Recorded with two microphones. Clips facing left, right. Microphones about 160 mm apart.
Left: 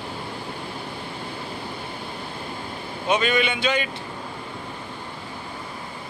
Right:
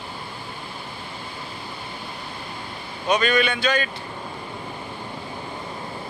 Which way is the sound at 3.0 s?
20° left (ahead or behind).